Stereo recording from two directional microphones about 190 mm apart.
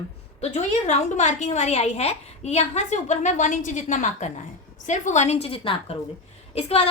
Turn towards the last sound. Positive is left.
turn(degrees=30)  # may be behind; listen again after turning